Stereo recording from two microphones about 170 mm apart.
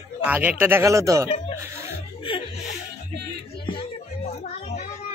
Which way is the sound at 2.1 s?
30° left (ahead or behind).